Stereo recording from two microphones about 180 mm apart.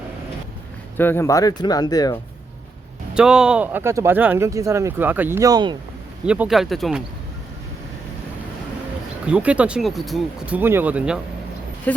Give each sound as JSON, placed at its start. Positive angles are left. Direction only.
{"t": 0.9, "sound": "speech", "side_deg": 10}
{"t": 3.2, "sound": "speech", "side_deg": -5}
{"t": 6.2, "sound": "speech", "side_deg": -5}
{"t": 9.2, "sound": "speech", "side_deg": -5}
{"t": 11.9, "sound": "speech", "side_deg": 10}